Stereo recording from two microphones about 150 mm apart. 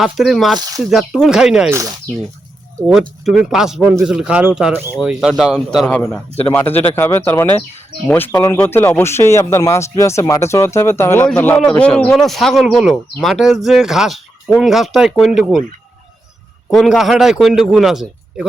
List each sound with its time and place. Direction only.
0.0 s speech: centre (ahead or behind)
3.2 s speech: centre (ahead or behind)
16.6 s speech: centre (ahead or behind)